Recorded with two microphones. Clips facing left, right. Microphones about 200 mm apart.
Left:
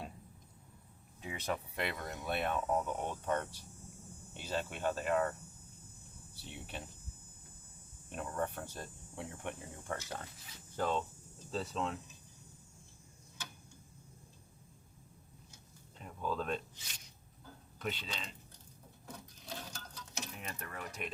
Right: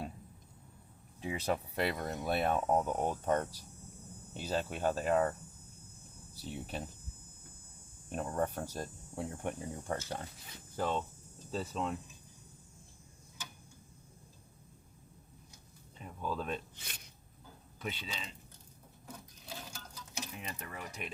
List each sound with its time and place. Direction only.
1.2 s speech: 35° right (ahead or behind)
6.3 s speech: 40° right (ahead or behind)
8.1 s speech: 35° right (ahead or behind)
10.8 s speech: 5° right (ahead or behind)
16.0 s a sound: 5° right (ahead or behind)
16.7 s speech: 55° right (ahead or behind)
17.7 s speech: 5° right (ahead or behind)
19.0 s sewing machine: 5° right (ahead or behind)
20.4 s speech: 15° right (ahead or behind)